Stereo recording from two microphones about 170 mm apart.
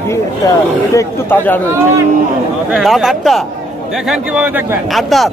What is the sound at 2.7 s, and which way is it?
Speech, 5° right (ahead or behind).